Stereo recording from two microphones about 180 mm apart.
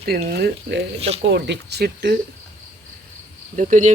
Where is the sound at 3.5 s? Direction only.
45° right (ahead or behind).